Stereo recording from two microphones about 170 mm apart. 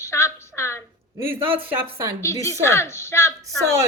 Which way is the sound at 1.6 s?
10° right (ahead or behind).